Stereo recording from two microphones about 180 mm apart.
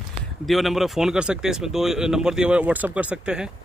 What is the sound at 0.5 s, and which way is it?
A man's voice, centre (ahead or behind).